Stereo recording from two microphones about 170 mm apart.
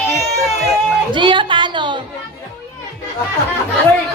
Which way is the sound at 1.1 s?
30° right (ahead or behind).